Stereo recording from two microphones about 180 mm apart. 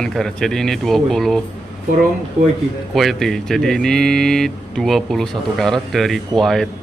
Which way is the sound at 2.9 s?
Centre (ahead or behind).